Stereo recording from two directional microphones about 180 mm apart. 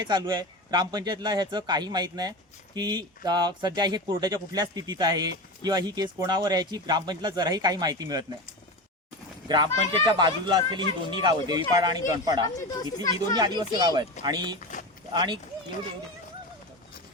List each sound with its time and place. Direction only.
0.0 s speech: 25° right (ahead or behind)
9.9 s speech: 25° right (ahead or behind)
12.5 s speech: 20° left (ahead or behind)
13.1 s speech: 20° right (ahead or behind)